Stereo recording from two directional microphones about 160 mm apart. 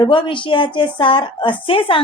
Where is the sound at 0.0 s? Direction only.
30° left (ahead or behind).